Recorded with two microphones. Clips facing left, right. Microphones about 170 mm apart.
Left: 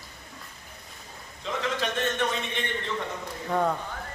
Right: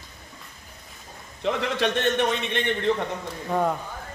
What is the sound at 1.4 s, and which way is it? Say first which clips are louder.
A man's voice: right 5 dB; 70° right (ahead or behind).